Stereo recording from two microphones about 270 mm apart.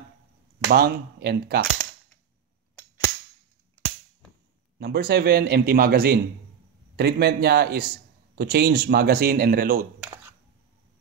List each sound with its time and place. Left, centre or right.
0.7 s a man's voice: right
3.7 s cap gun: centre
4.7 s a man's voice: right